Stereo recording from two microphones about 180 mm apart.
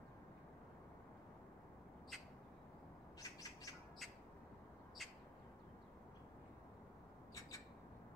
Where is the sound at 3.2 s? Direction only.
20° left (ahead or behind).